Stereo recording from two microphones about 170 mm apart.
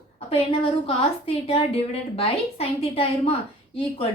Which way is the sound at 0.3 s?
35° left (ahead or behind).